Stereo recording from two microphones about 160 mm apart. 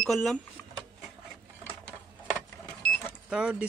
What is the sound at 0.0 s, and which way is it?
Speech, centre (ahead or behind).